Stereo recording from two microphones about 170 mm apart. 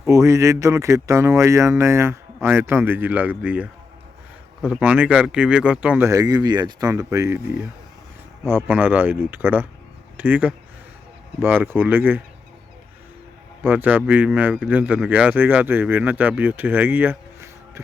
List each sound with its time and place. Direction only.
0.1 s a man's voice: 20° right (ahead or behind)
6.1 s speech: 20° right (ahead or behind)
8.4 s a man's voice: 10° right (ahead or behind)
13.6 s a man's voice: 10° right (ahead or behind)